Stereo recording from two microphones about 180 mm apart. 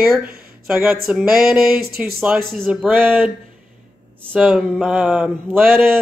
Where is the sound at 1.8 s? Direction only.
60° right (ahead or behind).